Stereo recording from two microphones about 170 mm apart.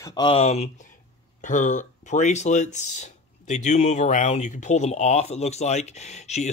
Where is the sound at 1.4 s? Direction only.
50° left (ahead or behind).